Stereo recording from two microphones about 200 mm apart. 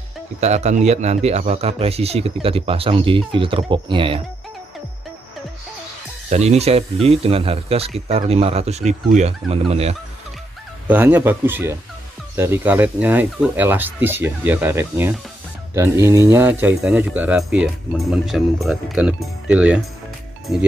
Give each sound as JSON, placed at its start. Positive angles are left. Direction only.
{"t": 0.4, "sound": "a man's voice", "side_deg": -35}
{"t": 6.3, "sound": "a man's voice", "side_deg": -35}
{"t": 10.9, "sound": "speech", "side_deg": -10}